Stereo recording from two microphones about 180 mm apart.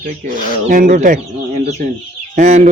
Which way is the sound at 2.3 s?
40° right (ahead or behind).